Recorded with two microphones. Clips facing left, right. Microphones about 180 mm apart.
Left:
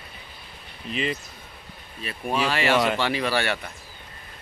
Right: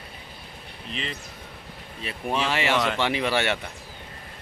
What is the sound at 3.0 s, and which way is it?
Speech, 20° right (ahead or behind).